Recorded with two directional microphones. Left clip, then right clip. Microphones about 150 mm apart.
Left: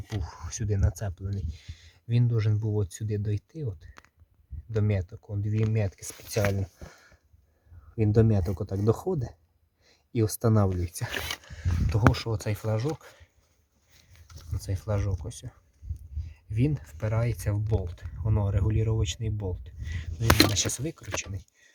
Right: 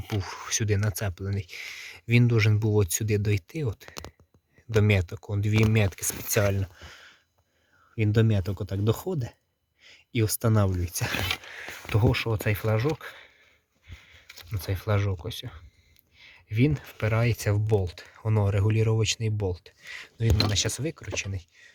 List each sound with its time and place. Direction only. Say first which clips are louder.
0.2 s speech: right 9 dB; centre (ahead or behind); by 6.6 s 20° right (ahead or behind)
7.9 s speech: left 2 dB; 5° right (ahead or behind)
14.5 s speech: right 4 dB; 5° right (ahead or behind)
16.1 s a sound: right 5 dB; 5° right (ahead or behind)
17.1 s speech: right 5 dB; 15° right (ahead or behind)